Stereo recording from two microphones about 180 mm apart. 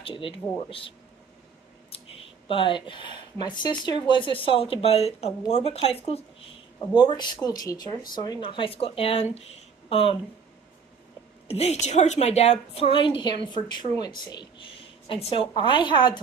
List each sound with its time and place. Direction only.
0.0 s a woman's voice: 30° left (ahead or behind)
2.4 s a woman's voice: 30° left (ahead or behind)
11.4 s a woman's voice: 35° left (ahead or behind)